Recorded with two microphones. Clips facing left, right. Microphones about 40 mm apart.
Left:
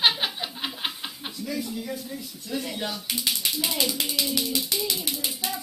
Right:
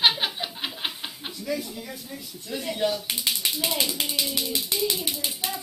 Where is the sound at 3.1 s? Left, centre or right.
Right.